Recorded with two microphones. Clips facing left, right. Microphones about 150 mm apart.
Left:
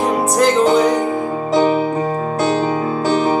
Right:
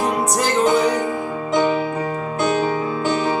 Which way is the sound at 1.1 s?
35° left (ahead or behind).